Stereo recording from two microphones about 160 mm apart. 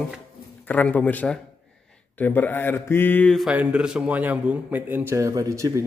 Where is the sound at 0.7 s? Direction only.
10° left (ahead or behind).